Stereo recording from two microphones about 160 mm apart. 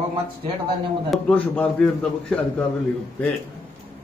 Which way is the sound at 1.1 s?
5° left (ahead or behind).